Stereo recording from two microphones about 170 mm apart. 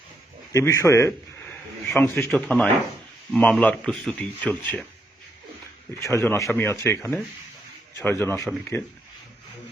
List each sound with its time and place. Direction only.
0.5 s speech: 15° left (ahead or behind)
6.0 s speech: 15° left (ahead or behind)